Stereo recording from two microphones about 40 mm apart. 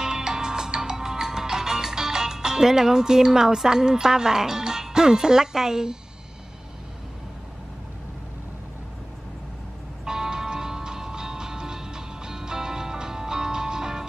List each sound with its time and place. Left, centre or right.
0.0 s music: centre
10.0 s music: centre